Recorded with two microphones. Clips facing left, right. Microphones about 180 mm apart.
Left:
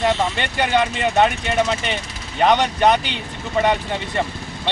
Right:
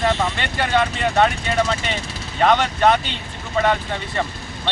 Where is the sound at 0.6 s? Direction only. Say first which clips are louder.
Left 1 dB; 15° left (ahead or behind).